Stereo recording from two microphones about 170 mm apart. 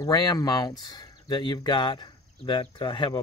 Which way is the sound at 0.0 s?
25° left (ahead or behind).